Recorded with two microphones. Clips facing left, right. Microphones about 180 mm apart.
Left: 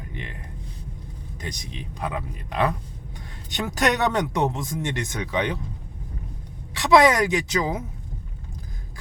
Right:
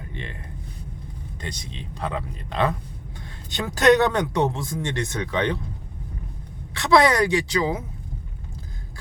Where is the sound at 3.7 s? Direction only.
15° left (ahead or behind).